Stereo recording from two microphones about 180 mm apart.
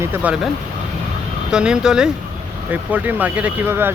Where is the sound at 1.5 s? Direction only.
5° right (ahead or behind).